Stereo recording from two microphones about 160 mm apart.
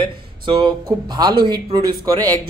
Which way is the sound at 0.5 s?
30° right (ahead or behind).